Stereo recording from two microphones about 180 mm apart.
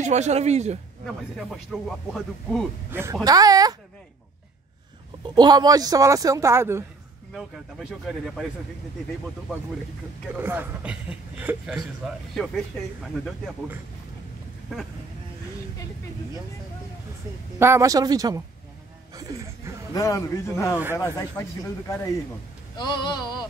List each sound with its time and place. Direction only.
0.0 s speech: 40° right (ahead or behind)
1.3 s speech: centre (ahead or behind)
2.9 s speech: 15° right (ahead or behind)
5.2 s speech: 25° right (ahead or behind)
7.3 s speech: 5° right (ahead or behind)
10.3 s speech: 10° right (ahead or behind)
17.6 s speech: 15° right (ahead or behind)
19.9 s a man's voice: 20° left (ahead or behind)